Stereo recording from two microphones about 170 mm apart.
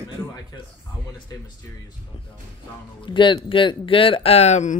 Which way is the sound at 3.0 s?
30° left (ahead or behind).